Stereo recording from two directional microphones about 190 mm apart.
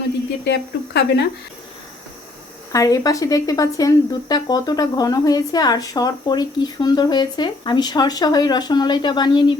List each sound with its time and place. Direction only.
0.4 s speech: 60° left (ahead or behind)
2.7 s speech: 20° left (ahead or behind)